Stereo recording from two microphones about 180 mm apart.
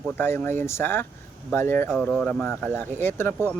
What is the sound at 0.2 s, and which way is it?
Speech, 10° left (ahead or behind).